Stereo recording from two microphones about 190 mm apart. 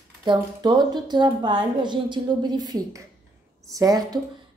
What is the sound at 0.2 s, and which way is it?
A woman's voice, 20° right (ahead or behind).